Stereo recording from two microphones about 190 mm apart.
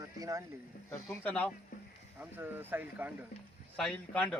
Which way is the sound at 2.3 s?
10° right (ahead or behind).